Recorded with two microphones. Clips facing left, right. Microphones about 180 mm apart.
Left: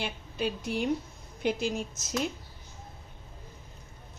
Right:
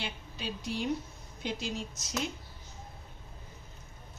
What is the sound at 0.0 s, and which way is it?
A woman's voice, 55° left (ahead or behind).